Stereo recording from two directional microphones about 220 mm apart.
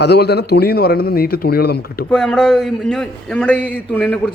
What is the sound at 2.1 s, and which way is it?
A man's voice, centre (ahead or behind).